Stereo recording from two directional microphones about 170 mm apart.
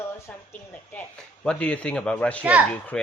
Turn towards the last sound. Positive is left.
turn(degrees=5)  # may be behind; listen again after turning